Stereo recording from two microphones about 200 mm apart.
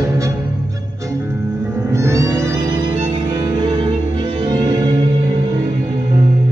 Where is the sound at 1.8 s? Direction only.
15° right (ahead or behind).